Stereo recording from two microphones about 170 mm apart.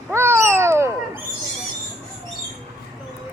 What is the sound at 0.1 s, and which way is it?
Cat, 15° right (ahead or behind).